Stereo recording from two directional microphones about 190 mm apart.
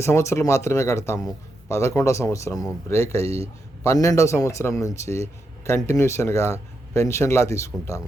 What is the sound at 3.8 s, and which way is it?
Speech, 15° left (ahead or behind).